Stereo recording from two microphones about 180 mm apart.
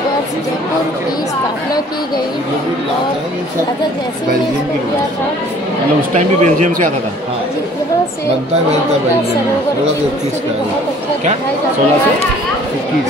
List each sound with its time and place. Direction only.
6.1 s speech: 40° right (ahead or behind)